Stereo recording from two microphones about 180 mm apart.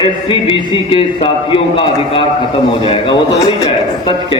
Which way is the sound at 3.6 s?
25° left (ahead or behind).